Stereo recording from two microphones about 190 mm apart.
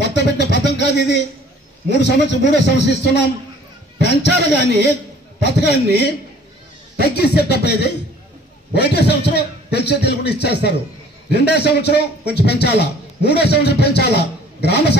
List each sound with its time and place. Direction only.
0.0 s a man's voice: 65° left (ahead or behind)